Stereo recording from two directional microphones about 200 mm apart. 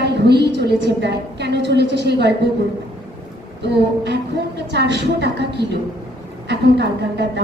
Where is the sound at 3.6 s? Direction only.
60° right (ahead or behind).